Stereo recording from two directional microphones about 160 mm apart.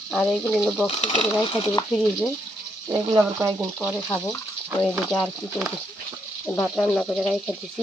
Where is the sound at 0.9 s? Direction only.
40° left (ahead or behind).